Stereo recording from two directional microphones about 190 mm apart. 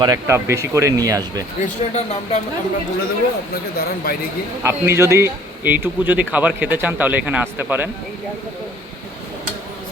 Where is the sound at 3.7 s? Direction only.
50° left (ahead or behind).